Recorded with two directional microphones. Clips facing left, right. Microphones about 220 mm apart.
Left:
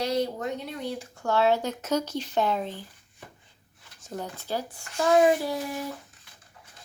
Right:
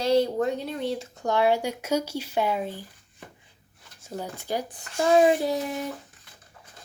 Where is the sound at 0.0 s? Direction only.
30° right (ahead or behind); by 2.8 s 10° right (ahead or behind).